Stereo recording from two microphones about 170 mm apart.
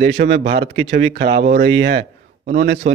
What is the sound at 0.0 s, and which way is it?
A man's voice, 80° right.